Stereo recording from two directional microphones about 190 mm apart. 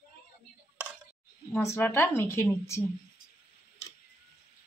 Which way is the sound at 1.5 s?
15° left (ahead or behind).